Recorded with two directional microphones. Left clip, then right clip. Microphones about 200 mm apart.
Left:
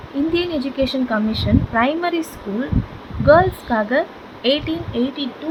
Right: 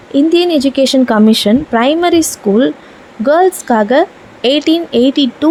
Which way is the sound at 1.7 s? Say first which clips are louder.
Right 8 dB; 40° right (ahead or behind).